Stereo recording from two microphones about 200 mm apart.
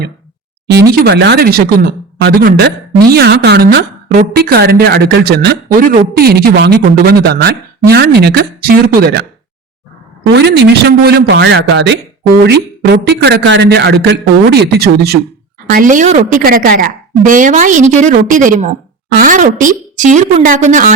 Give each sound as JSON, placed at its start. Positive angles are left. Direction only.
{"t": 0.7, "sound": "a woman's voice", "side_deg": -55}
{"t": 10.3, "sound": "a man's voice", "side_deg": -55}
{"t": 15.7, "sound": "a woman's voice", "side_deg": -40}